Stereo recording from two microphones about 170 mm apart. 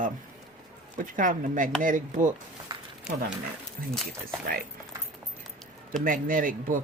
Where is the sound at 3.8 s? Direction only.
55° right (ahead or behind).